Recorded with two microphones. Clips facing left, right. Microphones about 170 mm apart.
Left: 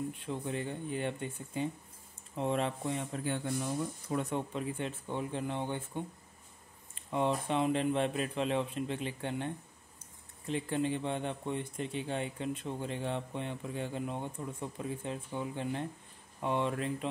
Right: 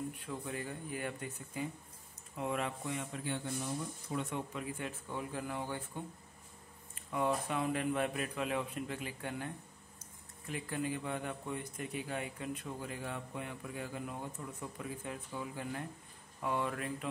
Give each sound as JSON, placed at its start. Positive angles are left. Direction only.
{"t": 0.1, "sound": "speech", "side_deg": 25}
{"t": 4.2, "sound": "speech", "side_deg": 35}
{"t": 7.1, "sound": "speech", "side_deg": 25}